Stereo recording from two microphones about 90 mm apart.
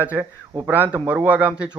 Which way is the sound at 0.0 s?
20° right (ahead or behind).